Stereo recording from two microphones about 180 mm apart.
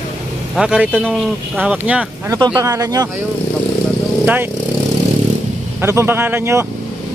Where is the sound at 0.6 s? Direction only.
5° right (ahead or behind).